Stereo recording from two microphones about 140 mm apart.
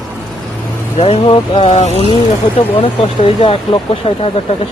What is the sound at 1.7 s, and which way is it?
Speech, 50° left (ahead or behind).